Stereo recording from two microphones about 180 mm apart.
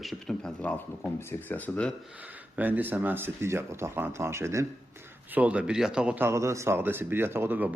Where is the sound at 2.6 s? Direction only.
10° right (ahead or behind).